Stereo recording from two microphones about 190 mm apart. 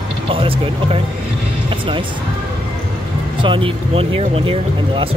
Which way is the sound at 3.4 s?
25° right (ahead or behind).